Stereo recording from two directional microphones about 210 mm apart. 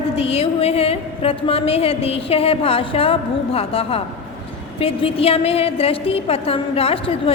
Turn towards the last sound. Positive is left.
turn(degrees=25)  # may be behind; listen again after turning